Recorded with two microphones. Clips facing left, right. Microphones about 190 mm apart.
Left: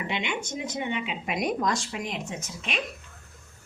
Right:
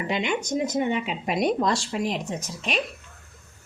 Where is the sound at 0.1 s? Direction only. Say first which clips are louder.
Right 9 dB; 40° right (ahead or behind).